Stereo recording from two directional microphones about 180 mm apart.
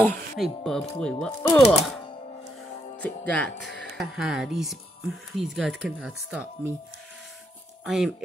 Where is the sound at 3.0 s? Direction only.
10° left (ahead or behind).